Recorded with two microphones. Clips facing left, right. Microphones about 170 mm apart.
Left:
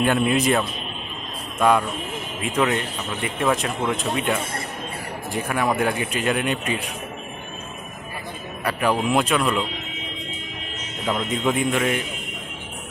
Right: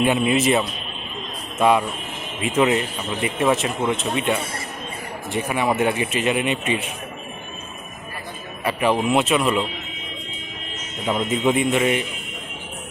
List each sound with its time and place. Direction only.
0.0 s a man's voice: centre (ahead or behind)
8.6 s a man's voice: centre (ahead or behind)
11.0 s a man's voice: 5° right (ahead or behind)